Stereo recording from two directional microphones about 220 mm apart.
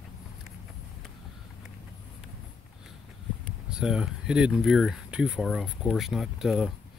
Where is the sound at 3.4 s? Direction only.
Centre (ahead or behind).